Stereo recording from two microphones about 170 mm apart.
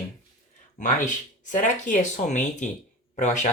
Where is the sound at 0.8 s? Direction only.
50° left (ahead or behind).